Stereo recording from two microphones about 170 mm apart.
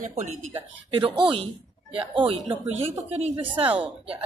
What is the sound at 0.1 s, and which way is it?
Speech, 35° right (ahead or behind).